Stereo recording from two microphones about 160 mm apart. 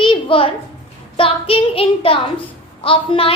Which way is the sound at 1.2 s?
35° left (ahead or behind).